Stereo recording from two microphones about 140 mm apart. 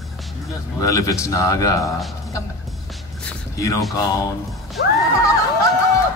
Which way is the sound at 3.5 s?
25° left (ahead or behind).